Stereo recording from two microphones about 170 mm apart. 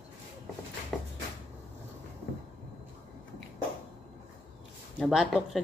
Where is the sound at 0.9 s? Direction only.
Centre (ahead or behind).